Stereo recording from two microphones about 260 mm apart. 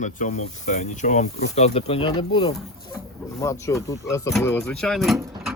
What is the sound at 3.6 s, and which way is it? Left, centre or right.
Speech, centre.